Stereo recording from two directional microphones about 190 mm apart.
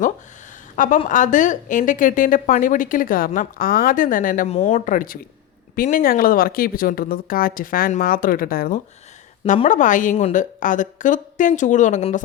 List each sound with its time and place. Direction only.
1.0 s a woman's voice: 40° left (ahead or behind)
9.4 s a woman's voice: 35° left (ahead or behind)